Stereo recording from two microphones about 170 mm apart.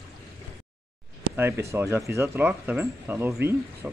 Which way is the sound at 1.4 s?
15° right (ahead or behind).